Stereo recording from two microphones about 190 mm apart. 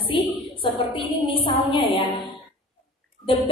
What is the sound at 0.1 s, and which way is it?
A woman's voice, 25° left (ahead or behind).